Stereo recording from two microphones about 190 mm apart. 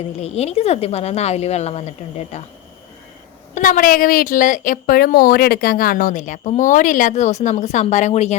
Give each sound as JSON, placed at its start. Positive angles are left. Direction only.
{"t": 0.2, "sound": "a woman's voice", "side_deg": 35}
{"t": 3.5, "sound": "a woman's voice", "side_deg": 45}